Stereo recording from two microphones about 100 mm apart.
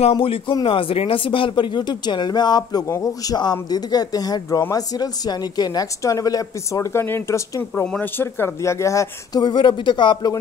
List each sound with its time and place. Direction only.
0.0 s speech: 65° left (ahead or behind); by 7.8 s 30° left (ahead or behind)
7.8 s speech: 15° left (ahead or behind); by 9.4 s 30° left (ahead or behind)
9.4 s speech: 50° left (ahead or behind)